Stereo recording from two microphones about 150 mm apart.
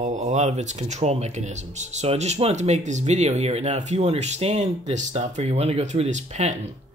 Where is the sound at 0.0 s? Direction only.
50° right (ahead or behind).